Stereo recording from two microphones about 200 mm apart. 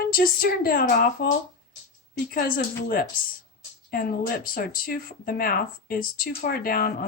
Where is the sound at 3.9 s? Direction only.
45° left (ahead or behind).